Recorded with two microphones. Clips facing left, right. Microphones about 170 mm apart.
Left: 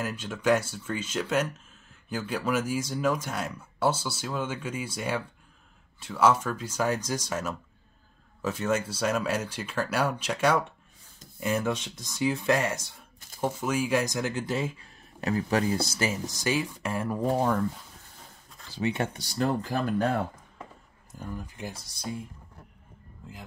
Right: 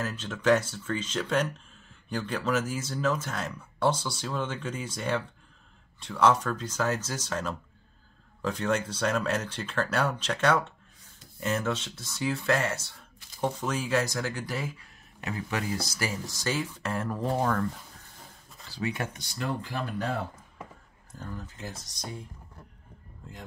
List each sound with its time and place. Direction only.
0.0 s speech: 10° left (ahead or behind)
18.7 s speech: 25° left (ahead or behind); by 20.1 s 40° left (ahead or behind)
21.2 s speech: 15° left (ahead or behind)